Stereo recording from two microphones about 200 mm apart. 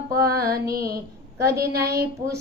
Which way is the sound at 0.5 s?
50° right (ahead or behind).